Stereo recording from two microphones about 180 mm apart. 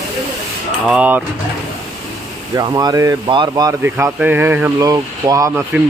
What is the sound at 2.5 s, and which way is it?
Speech, 20° right (ahead or behind).